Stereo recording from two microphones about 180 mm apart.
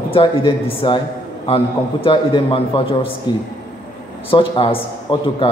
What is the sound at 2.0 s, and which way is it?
Speech, 30° left (ahead or behind).